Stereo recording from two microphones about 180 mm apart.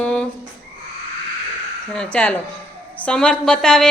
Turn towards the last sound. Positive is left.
turn(degrees=5)  # may be behind; listen again after turning